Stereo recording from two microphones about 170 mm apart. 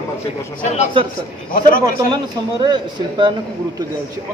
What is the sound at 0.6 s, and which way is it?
Speech, 40° left (ahead or behind).